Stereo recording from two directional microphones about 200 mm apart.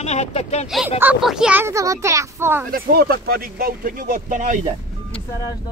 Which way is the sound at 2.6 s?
50° right (ahead or behind).